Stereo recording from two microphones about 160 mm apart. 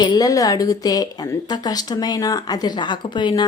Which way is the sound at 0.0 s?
25° left (ahead or behind).